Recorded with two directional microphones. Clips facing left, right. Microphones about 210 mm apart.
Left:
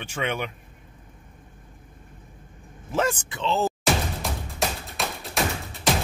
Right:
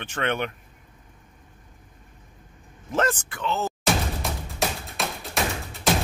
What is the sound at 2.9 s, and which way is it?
Speech, 10° left (ahead or behind).